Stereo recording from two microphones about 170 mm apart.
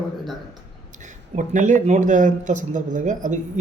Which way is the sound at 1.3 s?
45° right (ahead or behind).